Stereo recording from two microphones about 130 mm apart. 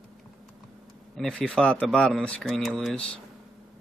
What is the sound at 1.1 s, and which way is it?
Speech, 5° left (ahead or behind).